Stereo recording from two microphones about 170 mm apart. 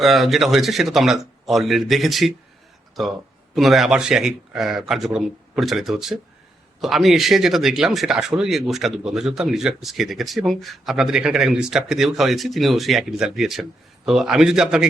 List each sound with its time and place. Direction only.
0.0 s speech: centre (ahead or behind)
3.5 s speech: centre (ahead or behind)